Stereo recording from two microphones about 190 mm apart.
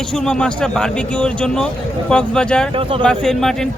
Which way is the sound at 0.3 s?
5° left (ahead or behind).